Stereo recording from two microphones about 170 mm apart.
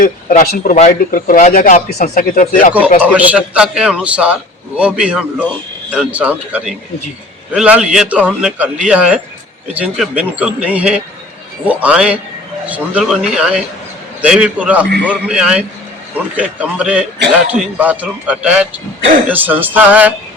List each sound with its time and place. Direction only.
0.0 s a man's voice: 55° left (ahead or behind)
3.0 s a man's voice: 10° right (ahead or behind)